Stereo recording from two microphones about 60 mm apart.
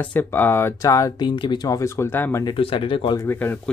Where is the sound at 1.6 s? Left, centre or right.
Left.